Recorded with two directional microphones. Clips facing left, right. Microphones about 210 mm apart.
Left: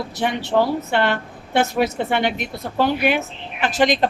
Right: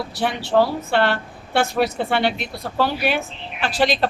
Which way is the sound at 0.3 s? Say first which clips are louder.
Even; 15° left (ahead or behind).